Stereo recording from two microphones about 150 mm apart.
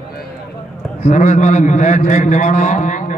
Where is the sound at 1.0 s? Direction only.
50° left (ahead or behind).